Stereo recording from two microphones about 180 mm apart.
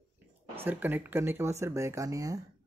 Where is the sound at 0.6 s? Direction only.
10° right (ahead or behind).